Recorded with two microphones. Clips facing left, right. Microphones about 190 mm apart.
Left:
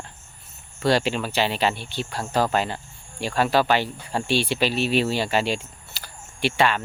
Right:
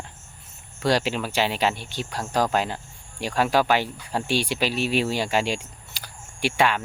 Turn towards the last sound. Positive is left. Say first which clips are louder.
# left 1 dB
turn(degrees=-10)  # may be behind; listen again after turning